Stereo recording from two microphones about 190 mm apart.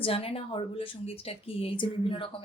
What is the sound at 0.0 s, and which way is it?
A woman's voice, 30° left (ahead or behind).